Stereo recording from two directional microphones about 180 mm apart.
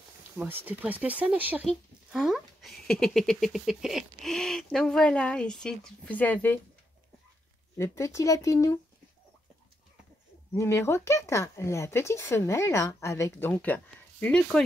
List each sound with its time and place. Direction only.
0.4 s speech: 10° right (ahead or behind); by 6.6 s 10° left (ahead or behind)
7.7 s speech: 15° left (ahead or behind)
10.5 s speech: 15° left (ahead or behind)